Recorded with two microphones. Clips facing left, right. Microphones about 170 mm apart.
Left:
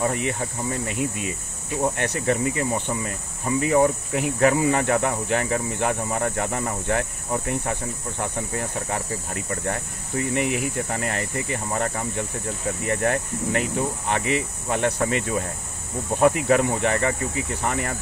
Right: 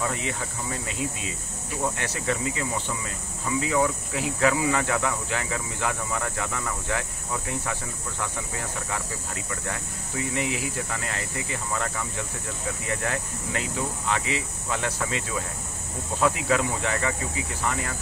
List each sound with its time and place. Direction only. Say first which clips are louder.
0.1 s speech: left 5 dB; 55° left (ahead or behind)
2.5 s speech: left 5 dB; 40° left (ahead or behind)
3.6 s speech: left 6 dB; 50° left (ahead or behind)
8.2 s speech: left 5 dB; 50° left (ahead or behind)